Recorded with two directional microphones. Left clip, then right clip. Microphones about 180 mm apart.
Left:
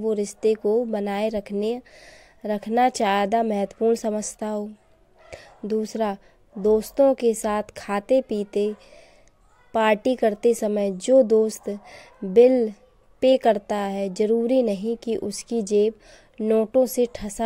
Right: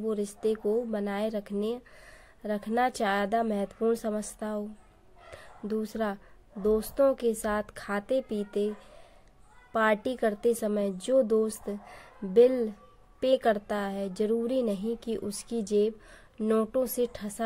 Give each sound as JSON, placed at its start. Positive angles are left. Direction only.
{"t": 0.0, "sound": "a woman's voice", "side_deg": 30}